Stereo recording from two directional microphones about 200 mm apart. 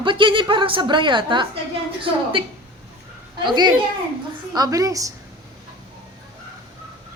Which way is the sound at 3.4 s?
20° right (ahead or behind).